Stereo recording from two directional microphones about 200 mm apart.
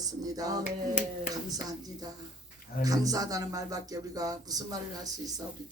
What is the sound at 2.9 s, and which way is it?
A man's voice, 15° right (ahead or behind).